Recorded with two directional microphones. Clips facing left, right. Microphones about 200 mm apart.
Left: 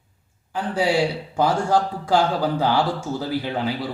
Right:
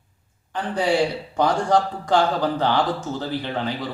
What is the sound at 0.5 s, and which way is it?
Speech, 10° left (ahead or behind).